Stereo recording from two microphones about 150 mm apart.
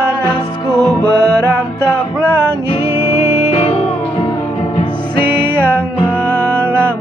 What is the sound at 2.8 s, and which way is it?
Music, 15° right (ahead or behind).